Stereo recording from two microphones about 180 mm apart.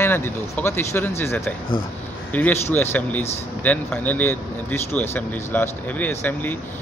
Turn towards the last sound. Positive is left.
turn(degrees=10)  # may be behind; listen again after turning